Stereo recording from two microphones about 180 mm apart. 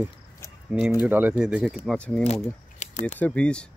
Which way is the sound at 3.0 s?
10° left (ahead or behind).